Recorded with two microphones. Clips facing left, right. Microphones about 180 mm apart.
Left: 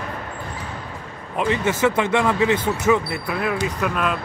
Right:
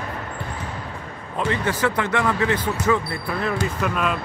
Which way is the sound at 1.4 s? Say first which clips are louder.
Left 3 dB; 20° left (ahead or behind).